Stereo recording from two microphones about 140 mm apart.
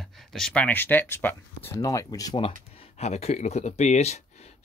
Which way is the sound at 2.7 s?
45° left (ahead or behind).